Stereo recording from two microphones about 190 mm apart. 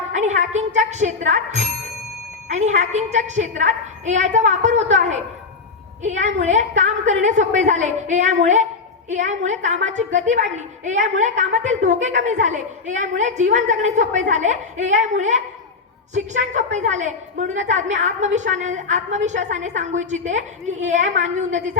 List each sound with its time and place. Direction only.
0.1 s a woman's voice: 40° right (ahead or behind)